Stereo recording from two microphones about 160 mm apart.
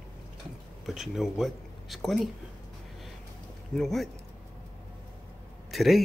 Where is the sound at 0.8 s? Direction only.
Centre (ahead or behind).